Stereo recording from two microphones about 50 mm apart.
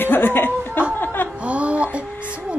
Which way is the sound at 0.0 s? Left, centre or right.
Left.